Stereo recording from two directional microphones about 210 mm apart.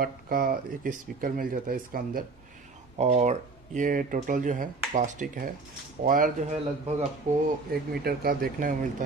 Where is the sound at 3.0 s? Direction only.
30° right (ahead or behind).